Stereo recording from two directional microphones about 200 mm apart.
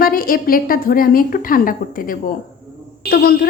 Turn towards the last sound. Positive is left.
turn(degrees=50)  # may be behind; listen again after turning